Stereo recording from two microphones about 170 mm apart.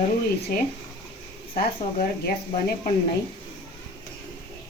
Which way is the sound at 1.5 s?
60° left (ahead or behind).